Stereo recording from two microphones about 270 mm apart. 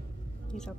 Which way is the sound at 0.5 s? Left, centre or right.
Left.